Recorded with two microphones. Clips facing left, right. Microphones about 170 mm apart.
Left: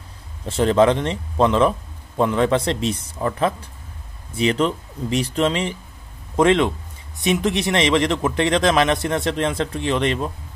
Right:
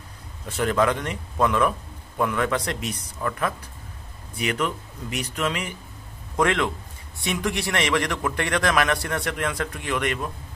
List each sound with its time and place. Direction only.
0.5 s speech: 25° left (ahead or behind)